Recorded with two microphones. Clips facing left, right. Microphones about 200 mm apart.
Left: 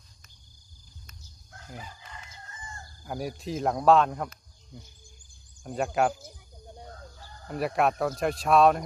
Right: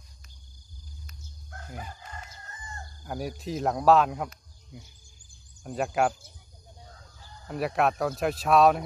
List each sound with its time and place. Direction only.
1.8 s crowing: 50° right (ahead or behind)
3.0 s speech: centre (ahead or behind)
5.6 s speech: centre (ahead or behind)
7.4 s speech: centre (ahead or behind)